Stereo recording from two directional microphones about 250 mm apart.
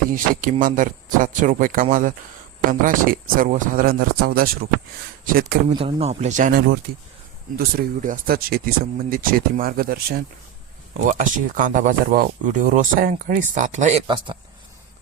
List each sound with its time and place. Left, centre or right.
0.1 s speech: right
5.7 s speech: right